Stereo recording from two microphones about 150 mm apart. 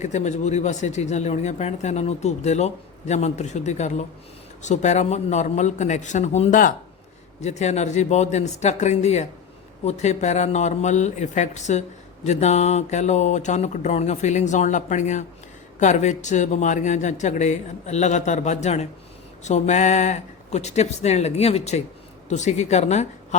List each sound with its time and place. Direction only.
0.0 s speech: 50° left (ahead or behind)